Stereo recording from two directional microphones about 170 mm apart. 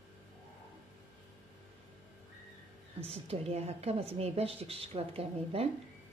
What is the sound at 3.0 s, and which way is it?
A woman's voice, 35° right (ahead or behind).